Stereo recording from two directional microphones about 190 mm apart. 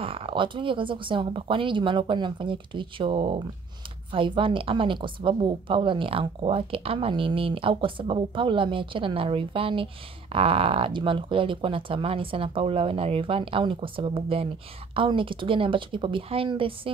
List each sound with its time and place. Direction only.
0.0 s a woman's voice: 30° right (ahead or behind)